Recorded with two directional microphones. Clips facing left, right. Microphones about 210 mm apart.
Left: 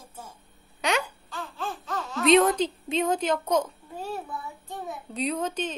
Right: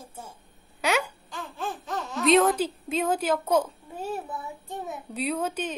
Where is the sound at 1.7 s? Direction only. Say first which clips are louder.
Even; 20° right (ahead or behind).